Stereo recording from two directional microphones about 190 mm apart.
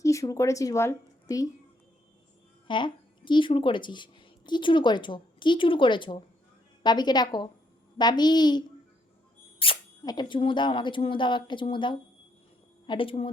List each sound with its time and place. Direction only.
0.0 s a woman's voice: 15° left (ahead or behind)
2.6 s a woman's voice: 25° left (ahead or behind)